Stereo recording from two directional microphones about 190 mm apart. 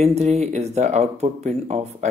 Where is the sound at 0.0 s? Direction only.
35° right (ahead or behind).